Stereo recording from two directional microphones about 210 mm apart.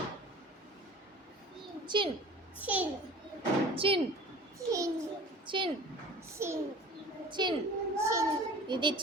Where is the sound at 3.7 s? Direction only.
25° right (ahead or behind).